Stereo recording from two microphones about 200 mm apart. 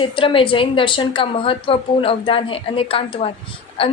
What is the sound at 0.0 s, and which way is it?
A woman's voice, 25° left (ahead or behind).